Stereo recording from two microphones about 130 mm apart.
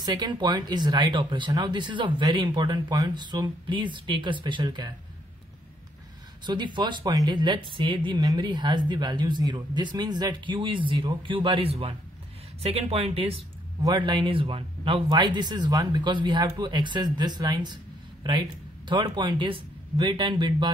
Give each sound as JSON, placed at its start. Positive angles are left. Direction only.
{"t": 0.0, "sound": "speech", "side_deg": -35}
{"t": 6.4, "sound": "speech", "side_deg": -35}
{"t": 13.8, "sound": "speech", "side_deg": -35}